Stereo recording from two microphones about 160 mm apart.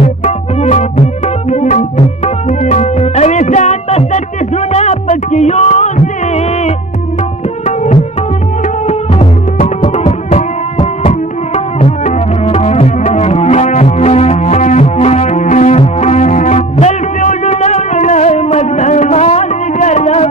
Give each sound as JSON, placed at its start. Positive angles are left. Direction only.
{"t": 0.0, "sound": "music", "side_deg": 45}
{"t": 7.6, "sound": "tabla", "side_deg": 50}
{"t": 9.8, "sound": "music", "side_deg": 35}